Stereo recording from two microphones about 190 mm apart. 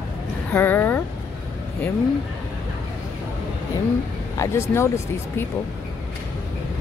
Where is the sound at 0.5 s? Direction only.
10° left (ahead or behind).